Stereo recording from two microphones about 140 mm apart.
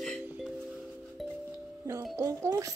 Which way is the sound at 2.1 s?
25° right (ahead or behind).